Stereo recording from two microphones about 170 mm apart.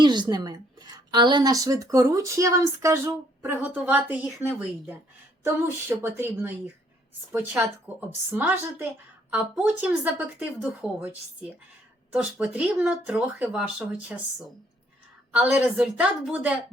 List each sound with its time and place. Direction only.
0.0 s a woman's voice: 25° right (ahead or behind); by 4.9 s centre (ahead or behind)
6.0 s speech: 15° right (ahead or behind)